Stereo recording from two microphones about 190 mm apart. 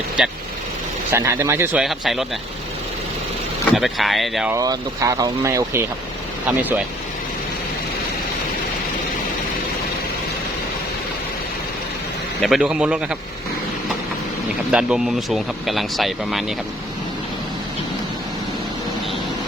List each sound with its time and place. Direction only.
0.2 s speech: 5° right (ahead or behind)
1.1 s speech: 15° right (ahead or behind)
1.8 s speech: centre (ahead or behind)
3.8 s speech: centre (ahead or behind)
4.5 s speech: 20° right (ahead or behind)
12.4 s speech: centre (ahead or behind)
14.7 s speech: 5° right (ahead or behind)